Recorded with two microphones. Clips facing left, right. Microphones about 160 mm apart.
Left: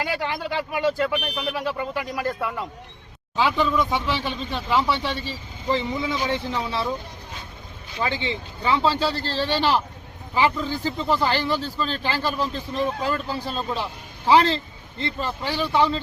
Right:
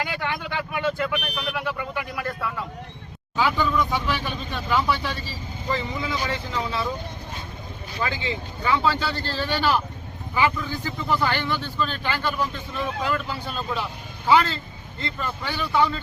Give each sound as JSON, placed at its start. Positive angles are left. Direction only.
{"t": 0.0, "sound": "speech", "side_deg": 35}
{"t": 3.3, "sound": "speech", "side_deg": 25}
{"t": 8.0, "sound": "speech", "side_deg": 25}